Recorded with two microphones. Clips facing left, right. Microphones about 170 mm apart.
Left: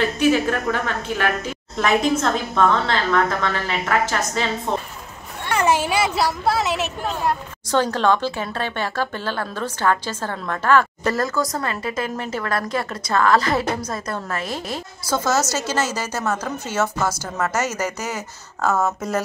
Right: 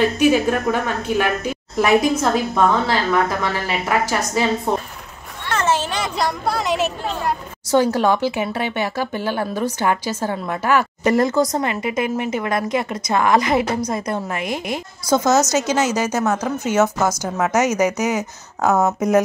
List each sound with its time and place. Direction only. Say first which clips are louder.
0.2 s speech: right 2 dB; 15° right (ahead or behind)
5.5 s a woman's voice: left 1 dB; 10° left (ahead or behind)
7.7 s speech: right 3 dB; 10° right (ahead or behind)